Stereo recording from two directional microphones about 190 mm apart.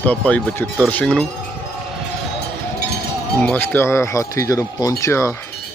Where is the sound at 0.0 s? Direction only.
10° left (ahead or behind).